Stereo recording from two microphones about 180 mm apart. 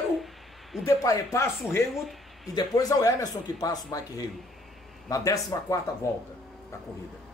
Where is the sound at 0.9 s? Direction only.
15° left (ahead or behind).